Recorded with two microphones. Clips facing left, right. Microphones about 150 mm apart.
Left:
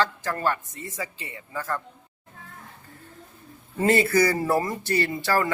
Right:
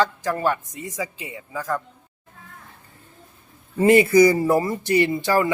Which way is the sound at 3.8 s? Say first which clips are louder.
Right 6 dB; 15° right (ahead or behind).